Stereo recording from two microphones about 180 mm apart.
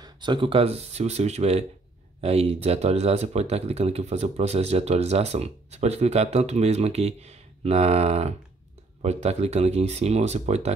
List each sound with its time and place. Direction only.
0.0 s speech: 25° right (ahead or behind)